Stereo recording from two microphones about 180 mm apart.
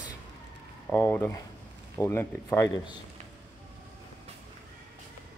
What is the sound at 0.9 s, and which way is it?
Speech, 10° left (ahead or behind).